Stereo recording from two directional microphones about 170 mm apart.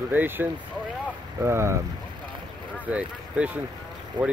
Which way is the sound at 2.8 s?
5° right (ahead or behind).